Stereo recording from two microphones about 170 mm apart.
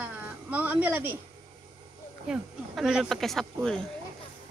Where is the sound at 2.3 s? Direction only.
5° right (ahead or behind).